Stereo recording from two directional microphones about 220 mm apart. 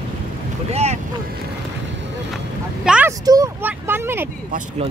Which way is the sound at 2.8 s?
5° right (ahead or behind).